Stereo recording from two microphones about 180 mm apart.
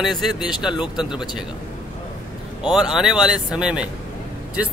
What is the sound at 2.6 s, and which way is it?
Speech, 5° right (ahead or behind).